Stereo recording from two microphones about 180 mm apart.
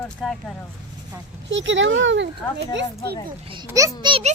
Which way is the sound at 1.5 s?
90° right.